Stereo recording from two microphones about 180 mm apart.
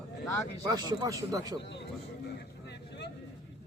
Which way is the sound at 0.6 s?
20° right (ahead or behind).